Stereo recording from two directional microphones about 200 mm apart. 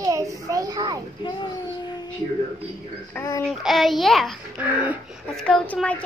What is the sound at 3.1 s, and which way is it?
Speech, 15° left (ahead or behind).